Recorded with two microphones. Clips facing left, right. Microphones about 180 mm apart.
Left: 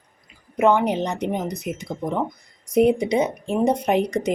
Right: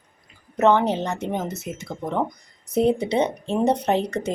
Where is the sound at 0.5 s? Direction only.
10° left (ahead or behind).